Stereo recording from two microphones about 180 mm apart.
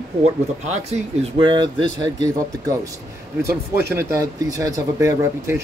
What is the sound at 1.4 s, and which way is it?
Speech, 25° right (ahead or behind).